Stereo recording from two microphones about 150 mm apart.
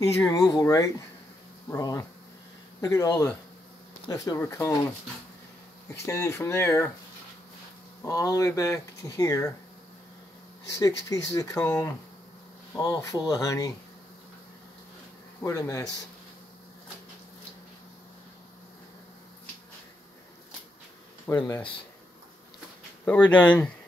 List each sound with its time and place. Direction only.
0.0 s speech: 20° left (ahead or behind)
6.0 s speech: 20° left (ahead or behind)
8.0 s speech: 20° left (ahead or behind)
10.8 s speech: 20° left (ahead or behind)
12.7 s speech: 25° left (ahead or behind)
15.4 s speech: 20° left (ahead or behind)
21.3 s speech: 20° left (ahead or behind)
23.0 s speech: 10° left (ahead or behind)